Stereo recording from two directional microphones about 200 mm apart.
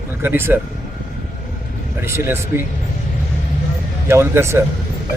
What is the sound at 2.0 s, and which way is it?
Speech, 10° right (ahead or behind).